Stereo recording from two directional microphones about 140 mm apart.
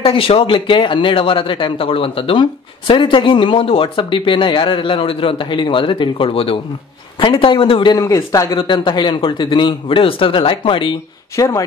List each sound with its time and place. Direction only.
0.0 s speech: 40° left (ahead or behind); by 8.5 s 25° left (ahead or behind)
8.5 s speech: 35° left (ahead or behind)
11.3 s speech: 25° left (ahead or behind)